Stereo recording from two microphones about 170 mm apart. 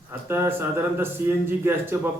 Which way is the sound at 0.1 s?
15° right (ahead or behind).